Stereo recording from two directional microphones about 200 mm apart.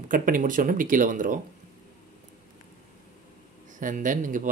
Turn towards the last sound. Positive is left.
turn(degrees=-40)  # may be behind; listen again after turning